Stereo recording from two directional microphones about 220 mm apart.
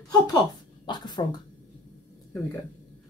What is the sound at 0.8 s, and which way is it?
Speech, 20° left (ahead or behind).